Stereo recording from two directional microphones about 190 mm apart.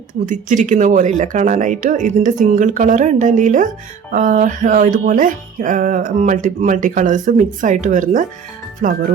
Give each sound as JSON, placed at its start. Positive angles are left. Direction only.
{"t": 0.1, "sound": "speech", "side_deg": -40}
{"t": 4.1, "sound": "music", "side_deg": -45}